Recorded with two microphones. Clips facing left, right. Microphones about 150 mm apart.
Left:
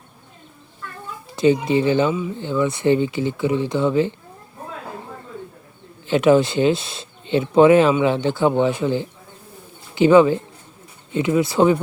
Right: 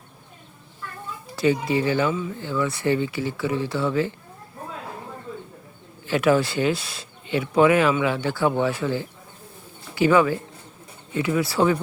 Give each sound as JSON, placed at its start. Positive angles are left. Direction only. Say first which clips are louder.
{"t": 1.4, "sound": "speech", "louder": "left 5 dB", "side_deg": 20}
{"t": 6.1, "sound": "speech", "louder": "left 5 dB", "side_deg": 20}